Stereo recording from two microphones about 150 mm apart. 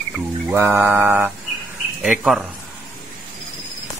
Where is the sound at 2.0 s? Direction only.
5° right (ahead or behind).